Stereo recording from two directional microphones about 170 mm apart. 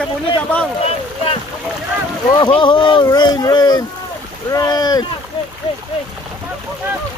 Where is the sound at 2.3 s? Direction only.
25° left (ahead or behind).